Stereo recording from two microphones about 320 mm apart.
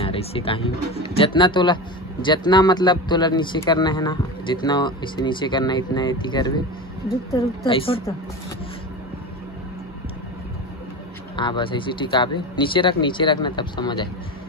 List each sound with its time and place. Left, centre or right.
0.0 s speech: centre
11.3 s speech: centre